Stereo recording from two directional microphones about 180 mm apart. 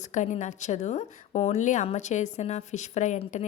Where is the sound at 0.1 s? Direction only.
40° left (ahead or behind).